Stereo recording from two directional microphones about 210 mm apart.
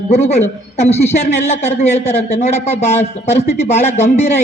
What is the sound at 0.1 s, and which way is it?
A man's voice, 30° left (ahead or behind).